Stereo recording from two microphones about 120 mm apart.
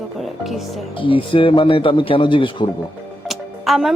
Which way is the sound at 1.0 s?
45° left (ahead or behind).